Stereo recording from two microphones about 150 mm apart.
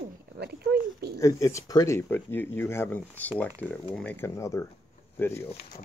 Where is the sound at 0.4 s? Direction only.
90° right.